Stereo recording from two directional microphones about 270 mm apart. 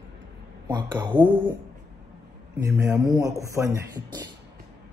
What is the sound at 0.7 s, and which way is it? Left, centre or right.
Speech, centre.